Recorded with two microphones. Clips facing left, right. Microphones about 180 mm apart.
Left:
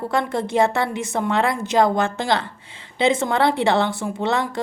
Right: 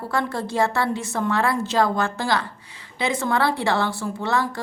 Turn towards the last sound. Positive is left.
turn(degrees=20)  # may be behind; listen again after turning